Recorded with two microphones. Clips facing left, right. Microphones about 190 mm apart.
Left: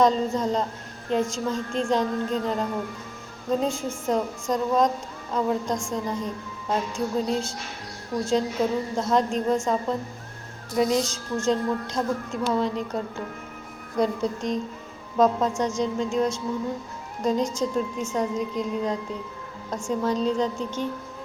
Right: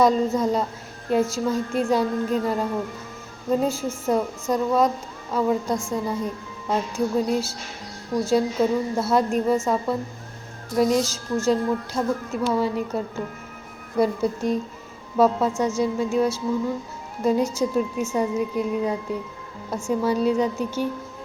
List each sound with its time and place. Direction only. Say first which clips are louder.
0.0 s speech: right 2 dB; 10° right (ahead or behind)
14.0 s speech: right 3 dB; 5° right (ahead or behind)